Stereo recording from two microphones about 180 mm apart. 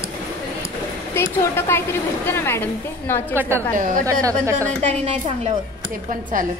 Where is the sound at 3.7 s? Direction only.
50° right (ahead or behind).